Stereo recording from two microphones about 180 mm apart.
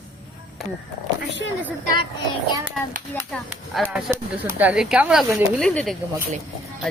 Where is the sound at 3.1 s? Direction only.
5° left (ahead or behind).